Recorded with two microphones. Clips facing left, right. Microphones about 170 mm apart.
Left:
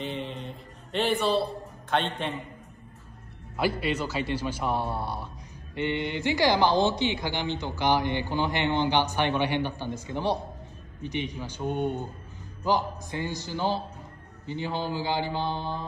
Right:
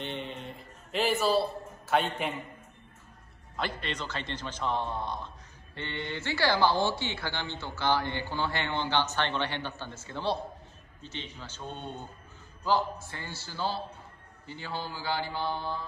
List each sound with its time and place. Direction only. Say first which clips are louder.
0.0 s a sound: left 3 dB; centre (ahead or behind)
1.9 s a man's voice: even; 5° right (ahead or behind)
3.8 s a man's voice: left 8 dB; 10° left (ahead or behind)